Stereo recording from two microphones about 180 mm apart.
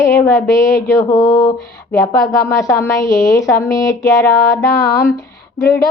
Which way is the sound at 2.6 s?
15° left (ahead or behind).